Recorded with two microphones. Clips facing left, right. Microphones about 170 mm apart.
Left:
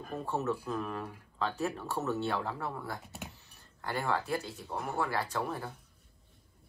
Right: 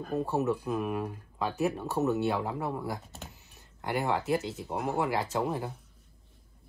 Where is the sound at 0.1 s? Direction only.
15° right (ahead or behind).